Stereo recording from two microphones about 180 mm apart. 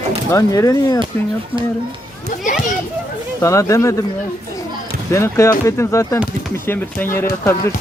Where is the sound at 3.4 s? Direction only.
15° left (ahead or behind).